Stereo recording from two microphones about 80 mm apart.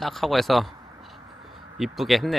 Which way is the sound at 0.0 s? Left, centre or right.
Centre.